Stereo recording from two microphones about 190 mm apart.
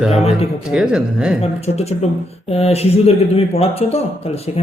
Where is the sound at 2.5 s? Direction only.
30° left (ahead or behind).